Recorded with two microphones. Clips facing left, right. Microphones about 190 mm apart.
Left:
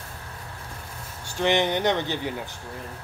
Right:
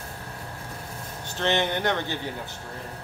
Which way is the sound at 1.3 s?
15° left (ahead or behind).